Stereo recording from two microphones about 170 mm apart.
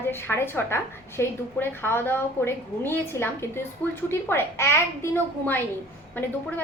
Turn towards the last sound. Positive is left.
turn(degrees=10)  # may be behind; listen again after turning